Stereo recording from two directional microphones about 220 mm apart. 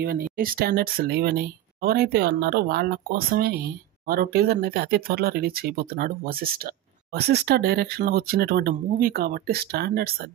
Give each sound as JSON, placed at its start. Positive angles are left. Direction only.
{"t": 0.0, "sound": "speech", "side_deg": -40}